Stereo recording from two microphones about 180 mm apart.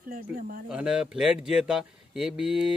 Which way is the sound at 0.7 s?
5° right (ahead or behind).